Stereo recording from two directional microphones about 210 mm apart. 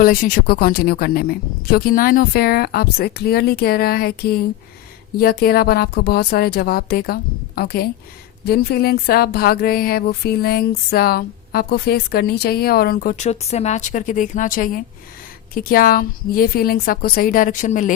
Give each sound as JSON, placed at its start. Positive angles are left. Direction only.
{"t": 0.0, "sound": "speech", "side_deg": 40}